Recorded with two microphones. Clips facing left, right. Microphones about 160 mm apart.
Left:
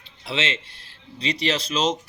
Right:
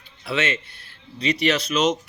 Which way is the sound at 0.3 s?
25° left (ahead or behind).